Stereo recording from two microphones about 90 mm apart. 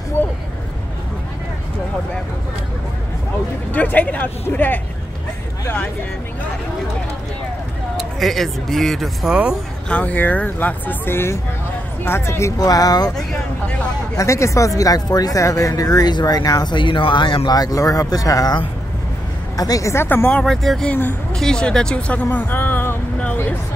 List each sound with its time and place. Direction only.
0.2 s a sound: 25° left (ahead or behind)
3.7 s speech: 20° left (ahead or behind)
8.0 s speech: centre (ahead or behind)
9.8 s speech: 15° left (ahead or behind); by 13.1 s 45° left (ahead or behind)
14.1 s speech: 35° left (ahead or behind)
14.8 s speech: 45° left (ahead or behind); by 17.5 s 65° left (ahead or behind)
17.5 s speech: 45° left (ahead or behind); by 20.2 s 30° left (ahead or behind)
20.2 s speech: 15° left (ahead or behind)
20.6 s speech: 5° left (ahead or behind); by 22.9 s 25° left (ahead or behind)